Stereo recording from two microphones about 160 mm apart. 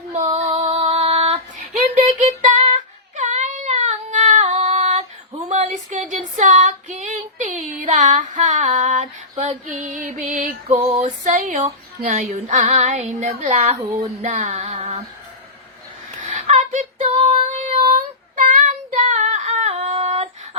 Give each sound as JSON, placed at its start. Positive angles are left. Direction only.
{"t": 0.1, "sound": "female singing", "side_deg": -40}
{"t": 9.6, "sound": "speech", "side_deg": -55}
{"t": 14.2, "sound": "female singing", "side_deg": -50}
{"t": 16.2, "sound": "child singing", "side_deg": -45}